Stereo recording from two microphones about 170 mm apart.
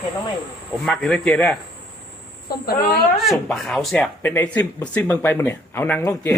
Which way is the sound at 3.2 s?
Centre (ahead or behind).